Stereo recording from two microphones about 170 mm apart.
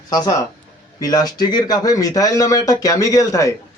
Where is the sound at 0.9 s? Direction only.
20° left (ahead or behind).